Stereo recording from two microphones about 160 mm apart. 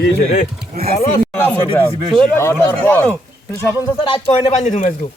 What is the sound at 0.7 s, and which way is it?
Speech, 70° right (ahead or behind).